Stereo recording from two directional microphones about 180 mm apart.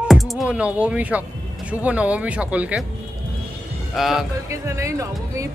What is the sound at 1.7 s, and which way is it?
Speech, 5° right (ahead or behind).